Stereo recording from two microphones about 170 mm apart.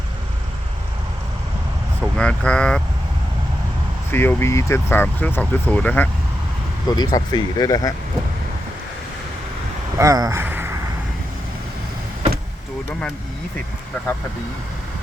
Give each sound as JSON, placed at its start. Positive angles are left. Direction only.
{"t": 2.0, "sound": "speech", "side_deg": 5}
{"t": 4.1, "sound": "speech", "side_deg": 15}
{"t": 6.9, "sound": "speech", "side_deg": 25}
{"t": 10.0, "sound": "speech", "side_deg": -20}